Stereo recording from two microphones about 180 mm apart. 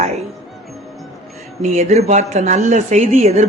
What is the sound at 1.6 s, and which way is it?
Speech, 40° right (ahead or behind).